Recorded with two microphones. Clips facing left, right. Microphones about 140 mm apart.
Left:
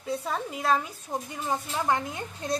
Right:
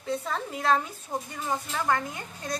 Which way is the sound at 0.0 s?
10° left (ahead or behind).